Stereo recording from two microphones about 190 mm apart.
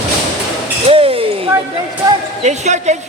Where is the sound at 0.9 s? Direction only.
30° right (ahead or behind).